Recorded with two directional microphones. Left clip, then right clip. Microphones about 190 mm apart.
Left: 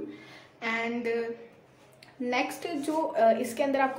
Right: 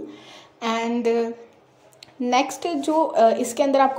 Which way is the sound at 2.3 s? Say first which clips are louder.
Right 9 dB; 30° right (ahead or behind).